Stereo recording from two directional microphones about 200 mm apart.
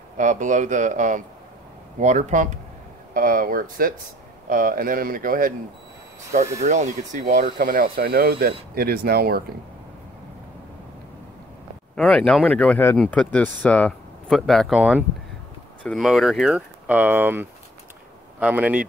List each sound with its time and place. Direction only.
0.2 s speech: 40° right (ahead or behind)
11.9 s speech: 5° left (ahead or behind)